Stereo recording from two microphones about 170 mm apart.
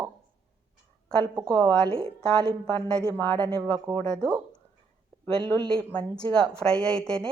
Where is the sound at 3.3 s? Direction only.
30° right (ahead or behind).